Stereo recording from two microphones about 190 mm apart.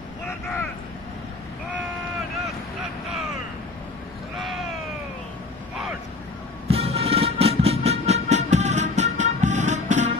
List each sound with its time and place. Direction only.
6.7 s train: 30° right (ahead or behind)